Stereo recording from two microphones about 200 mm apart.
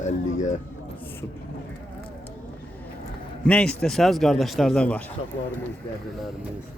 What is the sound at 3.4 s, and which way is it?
Speech, 5° left (ahead or behind).